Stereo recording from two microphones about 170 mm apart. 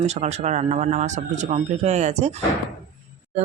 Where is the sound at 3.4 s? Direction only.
40° right (ahead or behind).